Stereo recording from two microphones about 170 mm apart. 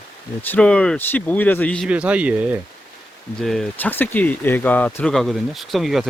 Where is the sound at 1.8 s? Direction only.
5° right (ahead or behind).